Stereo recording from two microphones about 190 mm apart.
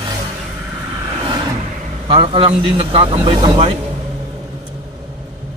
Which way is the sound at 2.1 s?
25° right (ahead or behind).